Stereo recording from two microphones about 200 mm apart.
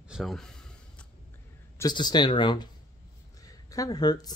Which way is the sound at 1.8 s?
20° left (ahead or behind).